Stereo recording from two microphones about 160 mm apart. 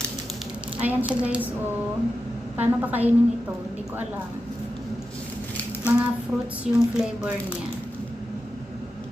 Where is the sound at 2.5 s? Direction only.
10° right (ahead or behind).